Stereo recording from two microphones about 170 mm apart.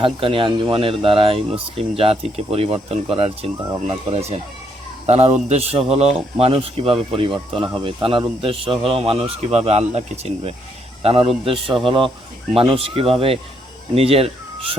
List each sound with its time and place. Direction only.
0.0 s speech: 30° right (ahead or behind)